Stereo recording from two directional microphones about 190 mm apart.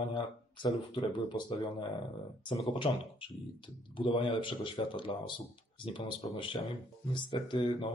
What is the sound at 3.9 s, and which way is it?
Speech, 25° left (ahead or behind).